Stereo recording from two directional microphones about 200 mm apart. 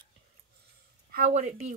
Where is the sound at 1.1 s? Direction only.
40° right (ahead or behind).